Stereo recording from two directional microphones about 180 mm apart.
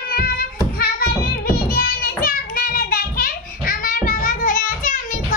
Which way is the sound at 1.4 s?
55° left (ahead or behind).